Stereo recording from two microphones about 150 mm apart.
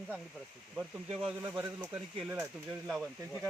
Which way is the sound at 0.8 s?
5° right (ahead or behind).